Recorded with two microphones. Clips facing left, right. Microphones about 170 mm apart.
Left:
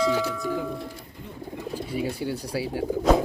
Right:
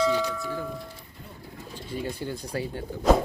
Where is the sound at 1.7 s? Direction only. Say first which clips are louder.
Left 4 dB; 10° left (ahead or behind).